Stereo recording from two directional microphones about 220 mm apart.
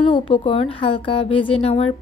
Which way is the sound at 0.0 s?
25° left (ahead or behind).